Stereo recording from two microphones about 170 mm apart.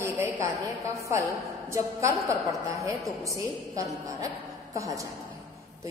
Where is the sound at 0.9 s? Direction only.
20° right (ahead or behind).